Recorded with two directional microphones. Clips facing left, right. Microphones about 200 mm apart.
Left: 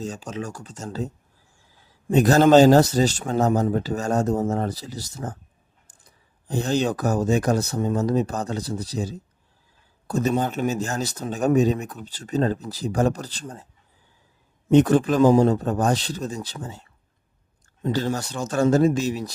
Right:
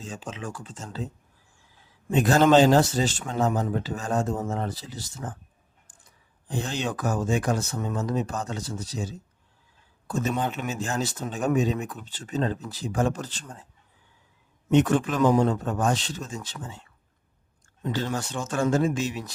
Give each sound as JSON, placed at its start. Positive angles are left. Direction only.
{"t": 0.0, "sound": "speech", "side_deg": 40}
{"t": 6.5, "sound": "speech", "side_deg": 40}
{"t": 14.7, "sound": "speech", "side_deg": 35}
{"t": 17.8, "sound": "speech", "side_deg": 40}